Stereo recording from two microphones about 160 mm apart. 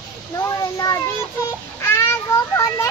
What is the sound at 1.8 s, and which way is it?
Children playing, 15° left (ahead or behind).